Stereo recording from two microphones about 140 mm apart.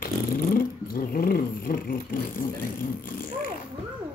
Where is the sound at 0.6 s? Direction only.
90° left.